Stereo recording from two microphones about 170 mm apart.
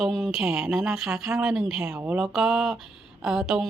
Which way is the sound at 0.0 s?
Centre (ahead or behind).